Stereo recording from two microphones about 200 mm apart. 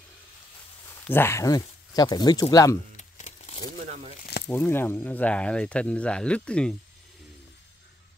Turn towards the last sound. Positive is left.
turn(degrees=5)  # may be behind; listen again after turning